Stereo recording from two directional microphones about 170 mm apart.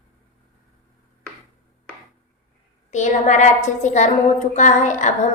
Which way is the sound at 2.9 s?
45° left (ahead or behind).